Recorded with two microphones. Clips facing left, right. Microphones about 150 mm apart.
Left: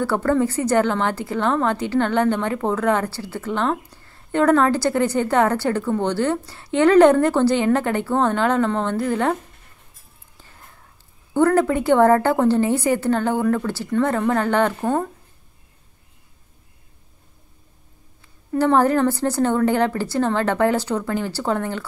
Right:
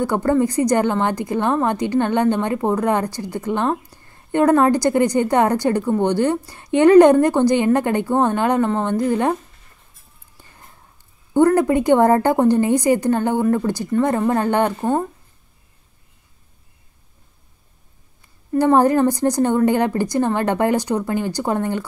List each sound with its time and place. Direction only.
0.0 s a woman's voice: 15° right (ahead or behind)
11.3 s a woman's voice: 15° right (ahead or behind)
18.6 s a woman's voice: 15° right (ahead or behind)